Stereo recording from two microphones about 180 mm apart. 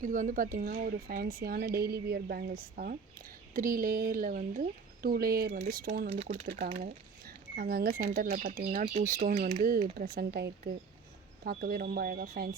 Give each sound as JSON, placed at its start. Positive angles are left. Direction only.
{"t": 0.0, "sound": "speech", "side_deg": -45}
{"t": 6.7, "sound": "speech", "side_deg": -40}
{"t": 7.5, "sound": "speech", "side_deg": -55}